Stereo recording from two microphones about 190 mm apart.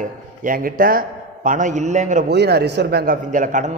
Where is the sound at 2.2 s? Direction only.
60° right (ahead or behind); by 3.7 s 45° right (ahead or behind).